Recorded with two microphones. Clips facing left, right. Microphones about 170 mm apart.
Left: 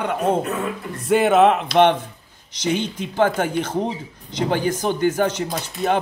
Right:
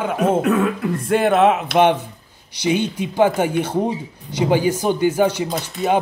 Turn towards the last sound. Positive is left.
turn(degrees=-10)  # may be behind; listen again after turning